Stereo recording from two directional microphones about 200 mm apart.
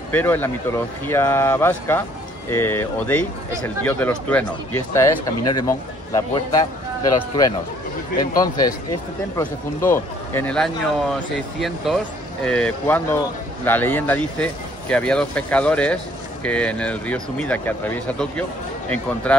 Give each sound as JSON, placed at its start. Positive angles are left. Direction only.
{"t": 0.1, "sound": "speech", "side_deg": 10}